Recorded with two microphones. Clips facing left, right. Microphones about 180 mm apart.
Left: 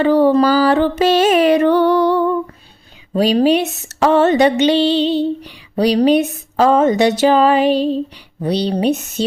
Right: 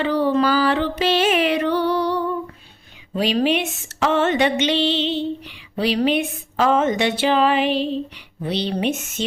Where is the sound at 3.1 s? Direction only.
40° left (ahead or behind).